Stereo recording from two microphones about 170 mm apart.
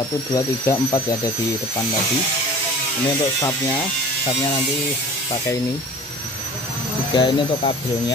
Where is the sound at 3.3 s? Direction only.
20° left (ahead or behind).